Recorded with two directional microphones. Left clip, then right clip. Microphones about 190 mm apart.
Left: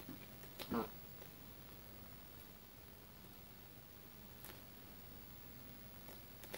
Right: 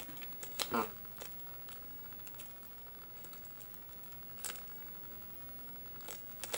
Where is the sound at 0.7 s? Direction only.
10° right (ahead or behind).